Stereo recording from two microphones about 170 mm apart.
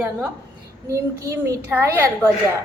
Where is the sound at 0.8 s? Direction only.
15° right (ahead or behind).